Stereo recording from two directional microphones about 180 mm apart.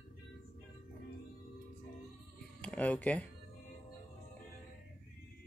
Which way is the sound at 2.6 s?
5° left (ahead or behind).